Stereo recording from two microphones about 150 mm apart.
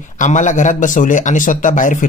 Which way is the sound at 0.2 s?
55° left (ahead or behind).